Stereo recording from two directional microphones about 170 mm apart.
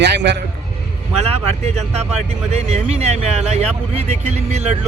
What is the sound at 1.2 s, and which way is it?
Speech, 35° right (ahead or behind).